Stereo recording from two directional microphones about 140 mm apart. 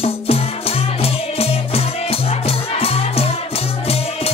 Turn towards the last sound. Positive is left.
turn(degrees=45)  # may be behind; listen again after turning